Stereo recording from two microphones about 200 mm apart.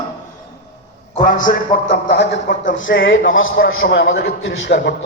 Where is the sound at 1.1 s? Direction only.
45° left (ahead or behind); by 5.1 s 60° left (ahead or behind).